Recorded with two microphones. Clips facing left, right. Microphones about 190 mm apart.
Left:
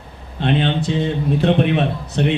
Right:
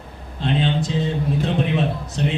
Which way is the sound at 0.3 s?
65° left (ahead or behind).